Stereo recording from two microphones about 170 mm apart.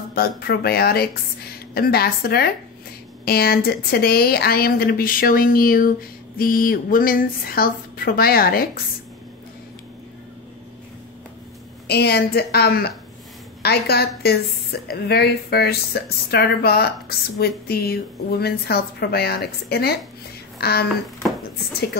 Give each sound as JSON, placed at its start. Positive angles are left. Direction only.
{"t": 0.1, "sound": "speech", "side_deg": 65}
{"t": 11.9, "sound": "a woman's voice", "side_deg": 70}